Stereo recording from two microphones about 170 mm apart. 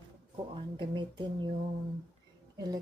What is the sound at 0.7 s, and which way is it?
Speech, 25° right (ahead or behind).